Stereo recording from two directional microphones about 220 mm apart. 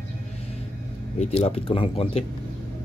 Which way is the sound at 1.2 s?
30° left (ahead or behind).